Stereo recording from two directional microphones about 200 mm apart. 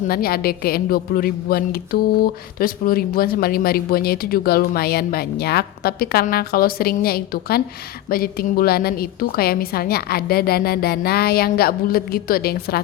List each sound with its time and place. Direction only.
0.1 s a woman's voice: 50° left (ahead or behind)